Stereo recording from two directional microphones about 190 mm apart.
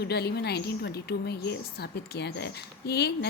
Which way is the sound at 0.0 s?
60° left (ahead or behind).